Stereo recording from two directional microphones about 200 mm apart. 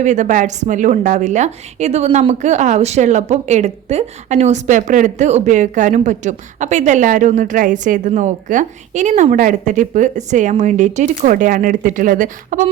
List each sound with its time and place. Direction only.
0.0 s a woman's voice: 35° right (ahead or behind)